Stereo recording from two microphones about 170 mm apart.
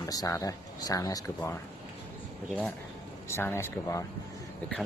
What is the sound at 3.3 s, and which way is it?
Speech, 15° left (ahead or behind).